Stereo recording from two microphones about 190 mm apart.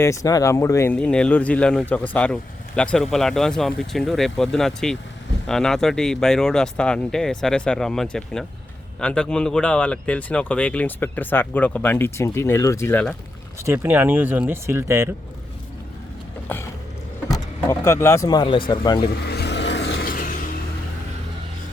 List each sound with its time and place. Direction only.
0.0 s speech: 15° left (ahead or behind)
13.6 s speech: 15° right (ahead or behind)
16.5 s mechanisms: 10° left (ahead or behind)
17.3 s speech: 15° left (ahead or behind)
19.2 s vehicle: 60° left (ahead or behind)